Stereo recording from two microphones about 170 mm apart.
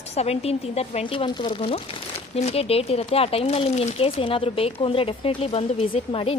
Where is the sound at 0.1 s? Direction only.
35° left (ahead or behind).